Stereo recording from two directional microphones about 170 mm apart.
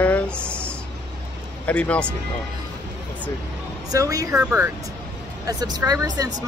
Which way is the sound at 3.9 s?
20° right (ahead or behind).